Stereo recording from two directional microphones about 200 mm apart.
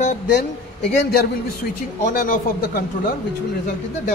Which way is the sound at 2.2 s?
45° left (ahead or behind).